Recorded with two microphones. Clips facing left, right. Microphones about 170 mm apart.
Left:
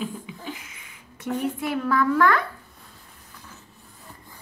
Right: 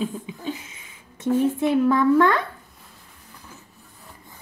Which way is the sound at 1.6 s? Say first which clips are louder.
Right 5 dB; 25° right (ahead or behind).